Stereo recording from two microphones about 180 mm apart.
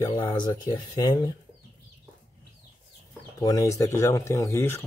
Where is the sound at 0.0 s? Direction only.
20° left (ahead or behind).